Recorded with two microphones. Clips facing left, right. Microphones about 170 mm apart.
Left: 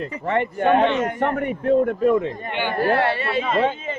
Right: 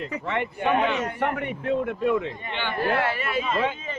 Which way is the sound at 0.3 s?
45° left (ahead or behind).